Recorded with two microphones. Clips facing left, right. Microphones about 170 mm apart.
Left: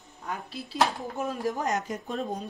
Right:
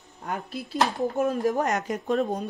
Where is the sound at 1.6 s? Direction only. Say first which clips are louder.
Right 3 dB; 65° right (ahead or behind).